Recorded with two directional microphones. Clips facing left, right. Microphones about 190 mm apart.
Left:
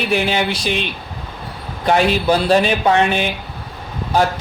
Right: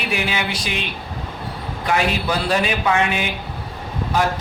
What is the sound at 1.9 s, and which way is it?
Speech, 30° left (ahead or behind).